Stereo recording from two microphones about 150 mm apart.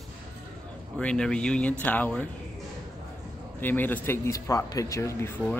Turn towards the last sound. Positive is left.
turn(degrees=20)  # may be behind; listen again after turning